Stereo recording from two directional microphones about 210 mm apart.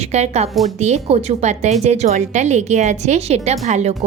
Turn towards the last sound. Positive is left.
turn(degrees=-30)  # may be behind; listen again after turning